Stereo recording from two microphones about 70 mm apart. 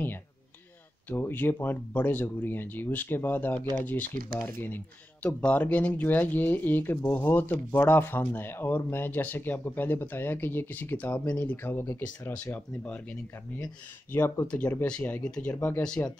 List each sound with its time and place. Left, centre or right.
1.1 s speech: left
12.5 s speech: centre
14.5 s speech: left
16.0 s speech: left